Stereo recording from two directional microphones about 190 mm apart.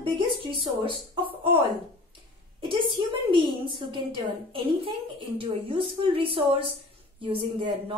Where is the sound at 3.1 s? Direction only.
25° right (ahead or behind).